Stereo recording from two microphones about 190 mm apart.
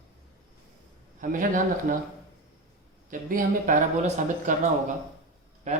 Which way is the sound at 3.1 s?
45° right (ahead or behind).